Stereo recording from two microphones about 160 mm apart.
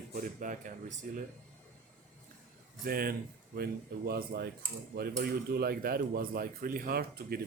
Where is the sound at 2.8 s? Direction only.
70° right (ahead or behind).